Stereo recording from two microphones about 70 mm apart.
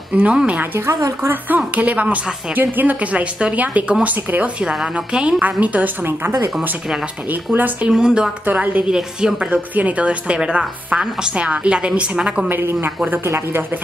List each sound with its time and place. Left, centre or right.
0.1 s a woman's voice: centre
0.7 s a woman's voice: right
1.8 s a woman's voice: right
7.9 s a woman's voice: centre
12.4 s speech: right